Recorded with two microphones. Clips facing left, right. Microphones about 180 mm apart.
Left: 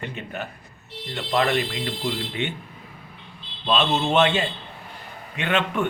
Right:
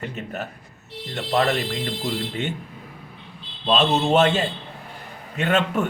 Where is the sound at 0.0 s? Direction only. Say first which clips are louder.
Right 2 dB; 40° right (ahead or behind).